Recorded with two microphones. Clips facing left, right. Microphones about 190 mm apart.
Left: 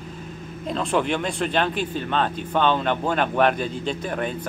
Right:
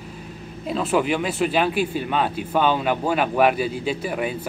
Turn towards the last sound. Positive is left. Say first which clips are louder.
# right 2 dB
turn(degrees=-5)  # may be behind; listen again after turning